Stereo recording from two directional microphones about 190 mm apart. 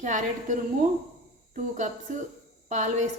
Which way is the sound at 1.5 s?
40° right (ahead or behind).